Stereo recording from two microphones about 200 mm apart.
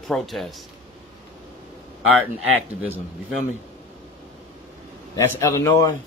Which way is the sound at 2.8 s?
5° right (ahead or behind).